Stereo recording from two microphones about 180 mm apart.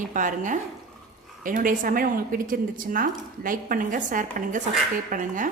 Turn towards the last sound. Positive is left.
turn(degrees=-45)  # may be behind; listen again after turning